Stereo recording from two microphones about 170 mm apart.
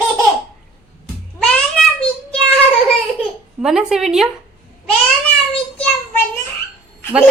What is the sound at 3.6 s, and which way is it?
Speech, 5° right (ahead or behind).